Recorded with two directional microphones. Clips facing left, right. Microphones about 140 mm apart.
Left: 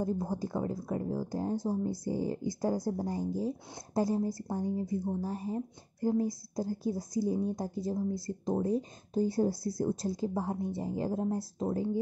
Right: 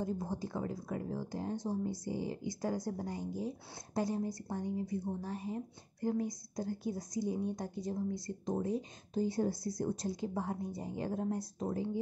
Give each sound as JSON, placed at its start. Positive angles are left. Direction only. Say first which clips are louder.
{"t": 0.0, "sound": "speech", "louder": "left 5 dB", "side_deg": 40}